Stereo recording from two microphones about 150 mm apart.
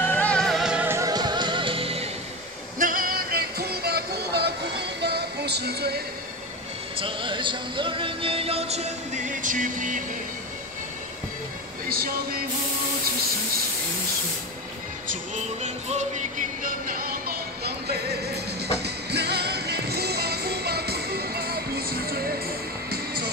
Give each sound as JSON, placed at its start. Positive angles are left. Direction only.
{"t": 0.0, "sound": "music", "side_deg": 10}
{"t": 0.8, "sound": "music", "side_deg": -20}
{"t": 2.8, "sound": "music", "side_deg": -70}
{"t": 7.0, "sound": "music", "side_deg": -35}
{"t": 11.9, "sound": "a sound", "side_deg": -80}
{"t": 15.3, "sound": "music", "side_deg": -50}